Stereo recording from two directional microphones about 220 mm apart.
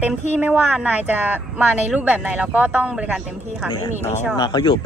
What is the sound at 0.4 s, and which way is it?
Speech, 10° right (ahead or behind).